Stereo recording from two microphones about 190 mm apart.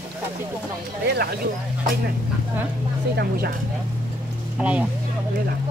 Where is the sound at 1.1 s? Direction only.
55° right (ahead or behind).